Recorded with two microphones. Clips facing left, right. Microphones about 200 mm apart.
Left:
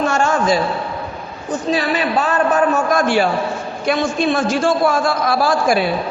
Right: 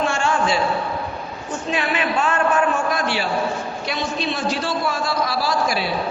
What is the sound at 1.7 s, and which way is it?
A man's voice, 35° left (ahead or behind).